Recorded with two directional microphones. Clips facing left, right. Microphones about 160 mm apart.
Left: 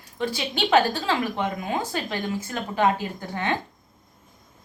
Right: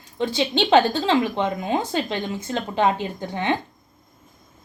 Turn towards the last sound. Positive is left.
turn(degrees=-20)  # may be behind; listen again after turning